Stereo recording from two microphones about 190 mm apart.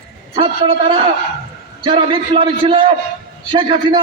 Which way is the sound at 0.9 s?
25° right (ahead or behind).